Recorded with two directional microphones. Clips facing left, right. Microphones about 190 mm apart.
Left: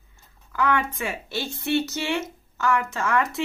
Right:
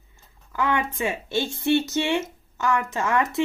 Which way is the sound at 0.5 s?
20° right (ahead or behind).